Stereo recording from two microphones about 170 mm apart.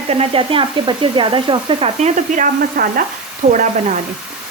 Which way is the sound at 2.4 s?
55° right (ahead or behind).